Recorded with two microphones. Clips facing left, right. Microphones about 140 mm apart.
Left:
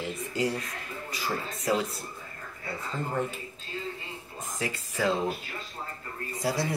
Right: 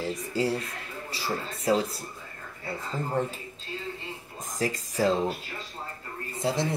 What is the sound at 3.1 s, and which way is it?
Speech, 30° right (ahead or behind).